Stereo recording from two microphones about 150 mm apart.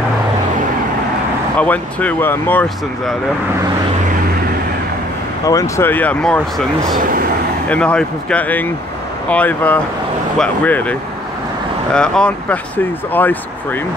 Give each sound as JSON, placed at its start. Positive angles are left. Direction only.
{"t": 1.6, "sound": "speech", "side_deg": 10}
{"t": 5.5, "sound": "speech", "side_deg": 20}
{"t": 7.0, "sound": "speech", "side_deg": -70}
{"t": 7.6, "sound": "speech", "side_deg": 10}